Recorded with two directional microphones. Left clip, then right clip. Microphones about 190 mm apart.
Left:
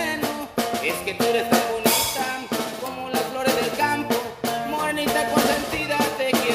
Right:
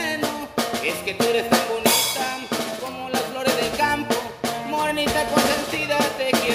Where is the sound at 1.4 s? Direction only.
20° right (ahead or behind).